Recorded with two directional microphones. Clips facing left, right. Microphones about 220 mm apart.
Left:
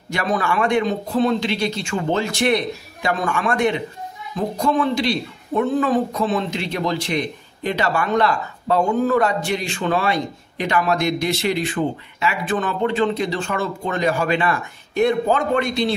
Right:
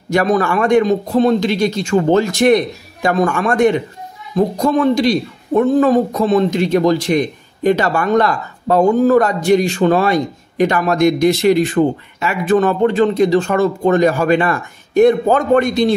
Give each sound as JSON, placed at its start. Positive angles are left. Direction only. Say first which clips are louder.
{"t": 0.1, "sound": "a man's voice", "louder": "right 7 dB", "side_deg": -40}